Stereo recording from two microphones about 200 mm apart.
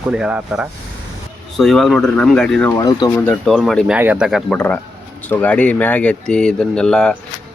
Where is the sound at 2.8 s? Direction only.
20° left (ahead or behind).